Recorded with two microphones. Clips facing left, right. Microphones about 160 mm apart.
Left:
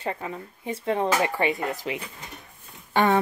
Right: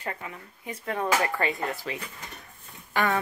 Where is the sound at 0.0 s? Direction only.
25° left (ahead or behind).